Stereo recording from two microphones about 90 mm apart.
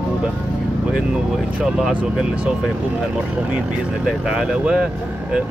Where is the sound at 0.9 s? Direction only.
5° right (ahead or behind).